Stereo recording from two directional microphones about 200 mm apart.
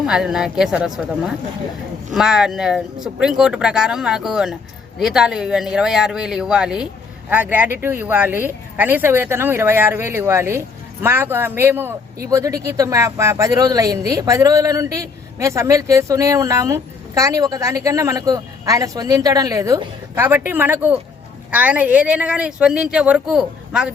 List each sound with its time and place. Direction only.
0.0 s speech: centre (ahead or behind)